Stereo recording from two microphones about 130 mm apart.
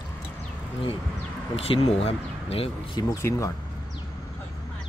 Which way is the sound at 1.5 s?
50° left (ahead or behind).